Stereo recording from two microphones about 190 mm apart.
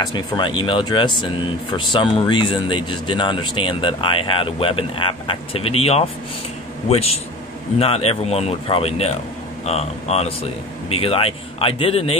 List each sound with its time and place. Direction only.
0.0 s speech: 25° left (ahead or behind)